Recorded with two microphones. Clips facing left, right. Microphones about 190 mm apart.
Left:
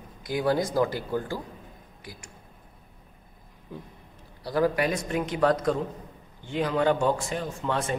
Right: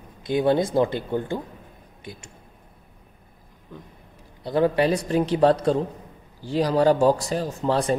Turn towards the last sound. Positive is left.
turn(degrees=-35)  # may be behind; listen again after turning